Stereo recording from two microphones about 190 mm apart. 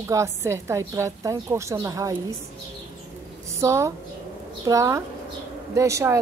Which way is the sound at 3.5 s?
15° right (ahead or behind).